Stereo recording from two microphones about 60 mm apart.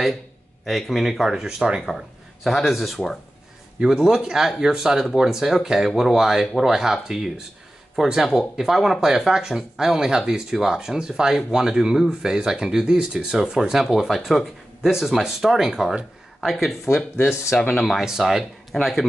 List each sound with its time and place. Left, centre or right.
0.7 s speech: centre
1.9 s speech: centre
3.8 s speech: centre
16.8 s speech: left
17.7 s speech: centre
18.0 s speech: centre